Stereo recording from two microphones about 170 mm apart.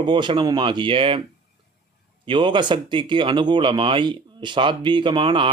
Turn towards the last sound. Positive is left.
turn(degrees=-30)  # may be behind; listen again after turning